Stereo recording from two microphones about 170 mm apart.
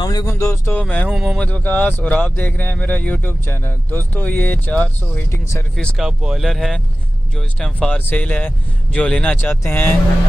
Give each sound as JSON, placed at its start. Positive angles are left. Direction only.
{"t": 0.0, "sound": "speech", "side_deg": 20}
{"t": 1.1, "sound": "speech", "side_deg": -5}
{"t": 1.4, "sound": "speech", "side_deg": 10}
{"t": 5.8, "sound": "speech", "side_deg": 0}